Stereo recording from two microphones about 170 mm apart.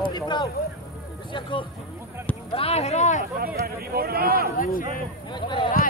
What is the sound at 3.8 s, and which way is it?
Speech, 65° right (ahead or behind).